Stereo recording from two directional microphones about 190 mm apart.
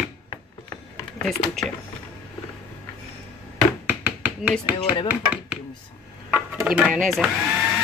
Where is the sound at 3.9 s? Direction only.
10° right (ahead or behind).